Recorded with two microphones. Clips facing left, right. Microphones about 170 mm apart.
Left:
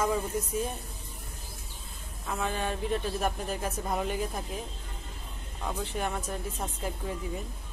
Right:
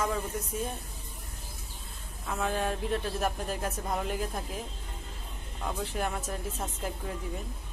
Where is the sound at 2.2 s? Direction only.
Centre (ahead or behind).